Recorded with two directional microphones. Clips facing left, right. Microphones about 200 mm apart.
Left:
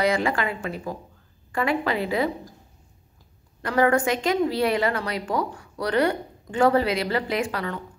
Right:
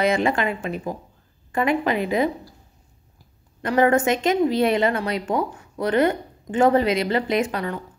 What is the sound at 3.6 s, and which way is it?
Speech, 20° right (ahead or behind).